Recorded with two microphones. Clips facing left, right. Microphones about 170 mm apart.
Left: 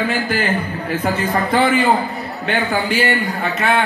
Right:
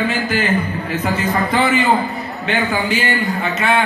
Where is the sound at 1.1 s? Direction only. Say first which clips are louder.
Right 1 dB; 55° left (ahead or behind).